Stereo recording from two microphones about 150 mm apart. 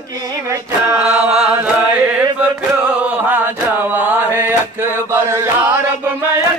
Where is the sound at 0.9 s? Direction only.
5° right (ahead or behind).